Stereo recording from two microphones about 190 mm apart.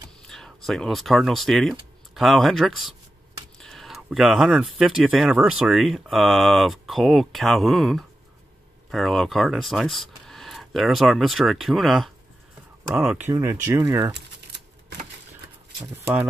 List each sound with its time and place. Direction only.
0.3 s speech: centre (ahead or behind)
13.3 s speech: 15° right (ahead or behind)
14.1 s a sound: 65° right (ahead or behind)